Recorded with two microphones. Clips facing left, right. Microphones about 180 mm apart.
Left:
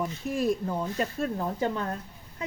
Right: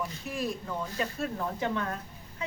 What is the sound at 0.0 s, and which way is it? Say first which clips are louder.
A woman's voice: left 6 dB; 40° left (ahead or behind).